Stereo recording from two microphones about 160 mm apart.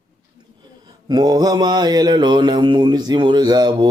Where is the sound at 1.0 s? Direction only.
25° right (ahead or behind).